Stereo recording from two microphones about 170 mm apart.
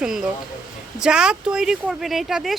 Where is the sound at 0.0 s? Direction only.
5° right (ahead or behind).